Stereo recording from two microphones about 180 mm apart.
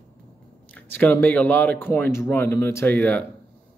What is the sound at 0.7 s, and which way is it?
Speech, 10° left (ahead or behind).